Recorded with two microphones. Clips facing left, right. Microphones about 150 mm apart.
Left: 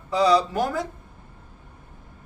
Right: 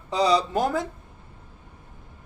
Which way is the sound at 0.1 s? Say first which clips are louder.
Left 2 dB; 20° right (ahead or behind).